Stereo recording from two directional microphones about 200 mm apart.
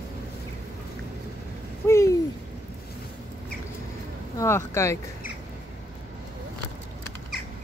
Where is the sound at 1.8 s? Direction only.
15° left (ahead or behind).